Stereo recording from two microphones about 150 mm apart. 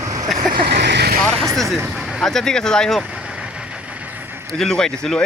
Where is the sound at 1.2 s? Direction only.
5° left (ahead or behind).